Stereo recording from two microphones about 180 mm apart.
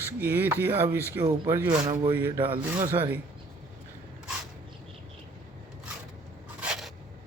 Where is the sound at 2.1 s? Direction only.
10° right (ahead or behind).